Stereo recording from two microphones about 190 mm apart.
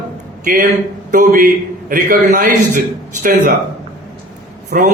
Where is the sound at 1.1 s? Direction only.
45° right (ahead or behind).